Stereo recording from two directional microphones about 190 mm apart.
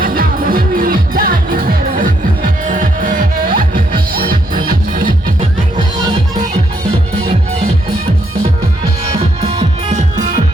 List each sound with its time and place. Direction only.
0.0 s music: 50° right (ahead or behind)
9.5 s music: 20° right (ahead or behind)
9.9 s music: 40° right (ahead or behind)